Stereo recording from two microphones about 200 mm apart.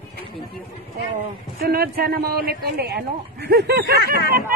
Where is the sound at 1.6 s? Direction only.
50° right (ahead or behind).